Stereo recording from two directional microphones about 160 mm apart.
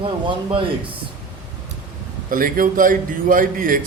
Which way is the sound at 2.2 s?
60° right (ahead or behind).